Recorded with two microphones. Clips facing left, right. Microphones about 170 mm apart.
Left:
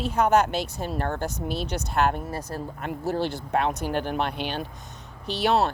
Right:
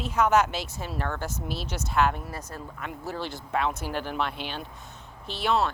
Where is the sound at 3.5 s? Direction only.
60° left (ahead or behind).